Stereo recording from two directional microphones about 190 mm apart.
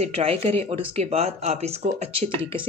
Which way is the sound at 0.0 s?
30° right (ahead or behind).